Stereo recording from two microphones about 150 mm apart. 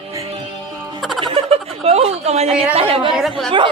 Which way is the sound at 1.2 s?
40° right (ahead or behind).